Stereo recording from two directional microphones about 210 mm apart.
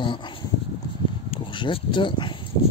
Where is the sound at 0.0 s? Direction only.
20° left (ahead or behind).